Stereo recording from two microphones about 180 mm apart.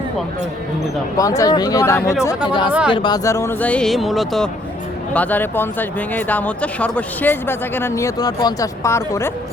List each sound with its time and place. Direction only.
1.1 s speech: 20° left (ahead or behind)
2.5 s speech: 25° left (ahead or behind)